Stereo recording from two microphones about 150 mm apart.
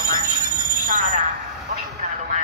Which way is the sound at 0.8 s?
60° right (ahead or behind).